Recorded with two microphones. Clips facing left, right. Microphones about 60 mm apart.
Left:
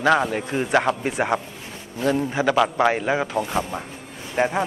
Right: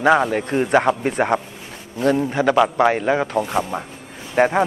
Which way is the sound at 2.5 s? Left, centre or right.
Centre.